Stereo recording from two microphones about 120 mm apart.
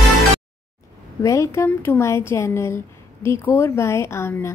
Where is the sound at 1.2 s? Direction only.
25° left (ahead or behind).